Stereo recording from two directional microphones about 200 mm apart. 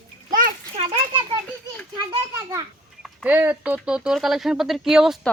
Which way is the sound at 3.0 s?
5° right (ahead or behind).